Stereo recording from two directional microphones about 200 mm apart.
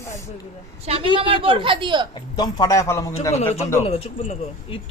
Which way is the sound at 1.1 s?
25° right (ahead or behind).